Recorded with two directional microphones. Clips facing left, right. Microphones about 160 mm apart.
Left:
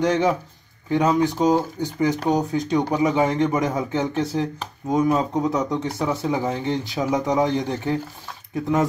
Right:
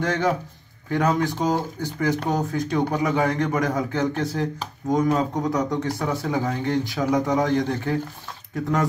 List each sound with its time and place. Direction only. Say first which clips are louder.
0.0 s speech: left 3 dB; 20° left (ahead or behind)